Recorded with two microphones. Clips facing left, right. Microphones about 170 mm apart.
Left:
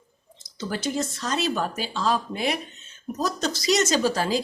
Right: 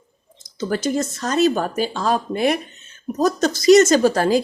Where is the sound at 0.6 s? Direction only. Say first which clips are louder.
Right 6 dB; 45° right (ahead or behind).